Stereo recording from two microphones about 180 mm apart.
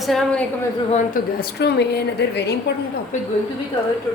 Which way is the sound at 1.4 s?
65° left (ahead or behind).